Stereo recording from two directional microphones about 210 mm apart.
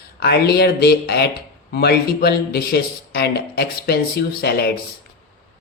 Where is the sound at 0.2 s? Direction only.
50° left (ahead or behind).